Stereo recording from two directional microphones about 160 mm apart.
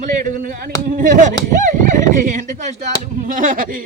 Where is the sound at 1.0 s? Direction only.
50° right (ahead or behind).